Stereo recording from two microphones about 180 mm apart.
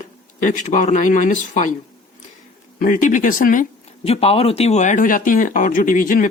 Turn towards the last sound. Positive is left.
turn(degrees=50)  # may be behind; listen again after turning